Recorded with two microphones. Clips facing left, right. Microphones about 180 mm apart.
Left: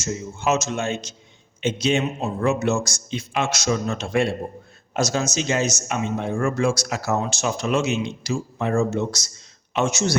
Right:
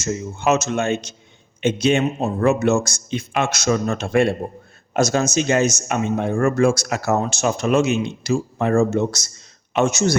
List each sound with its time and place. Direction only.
0.0 s a man's voice: 60° right (ahead or behind)